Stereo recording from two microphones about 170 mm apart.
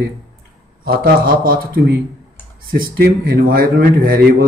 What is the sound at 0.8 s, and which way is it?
Speech, 60° right (ahead or behind).